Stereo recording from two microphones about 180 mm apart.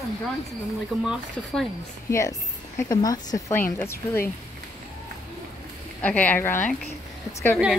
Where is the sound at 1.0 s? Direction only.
Centre (ahead or behind).